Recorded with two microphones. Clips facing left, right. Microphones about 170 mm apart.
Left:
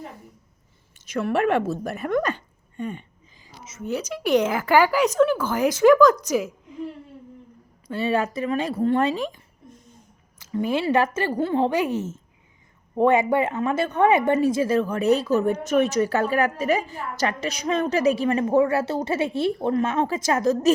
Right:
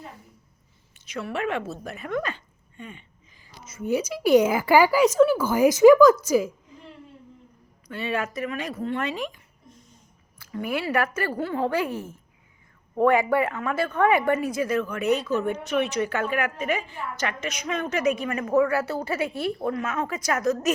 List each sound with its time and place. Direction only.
1.0 s a woman's voice: 50° left (ahead or behind)
3.8 s a woman's voice: 10° right (ahead or behind)
7.9 s a woman's voice: 35° left (ahead or behind)